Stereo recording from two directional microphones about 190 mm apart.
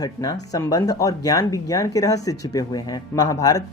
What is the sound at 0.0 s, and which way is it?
Speech, 20° left (ahead or behind).